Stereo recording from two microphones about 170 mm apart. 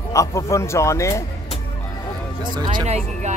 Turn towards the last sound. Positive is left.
turn(degrees=-40)  # may be behind; listen again after turning